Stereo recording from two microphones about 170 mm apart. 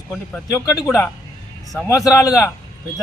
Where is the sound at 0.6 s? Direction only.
20° left (ahead or behind).